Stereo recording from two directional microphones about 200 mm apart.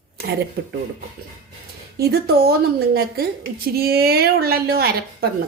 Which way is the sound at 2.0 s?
55° right (ahead or behind).